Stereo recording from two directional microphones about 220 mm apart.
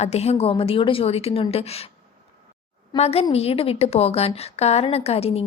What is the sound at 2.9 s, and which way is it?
A woman's voice, 25° left (ahead or behind).